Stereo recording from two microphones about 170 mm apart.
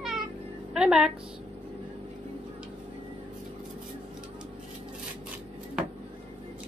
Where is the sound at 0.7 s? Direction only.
5° right (ahead or behind).